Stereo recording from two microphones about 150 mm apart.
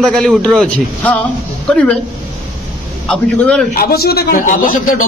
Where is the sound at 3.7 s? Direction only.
85° left; by 4.9 s 65° left (ahead or behind).